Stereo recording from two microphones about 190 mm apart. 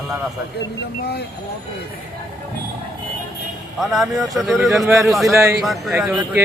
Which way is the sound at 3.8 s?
Centre (ahead or behind).